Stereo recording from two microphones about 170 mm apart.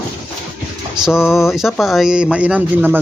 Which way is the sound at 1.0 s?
5° right (ahead or behind).